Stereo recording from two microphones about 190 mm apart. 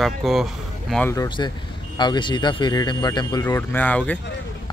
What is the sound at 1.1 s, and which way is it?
Speech, 20° left (ahead or behind).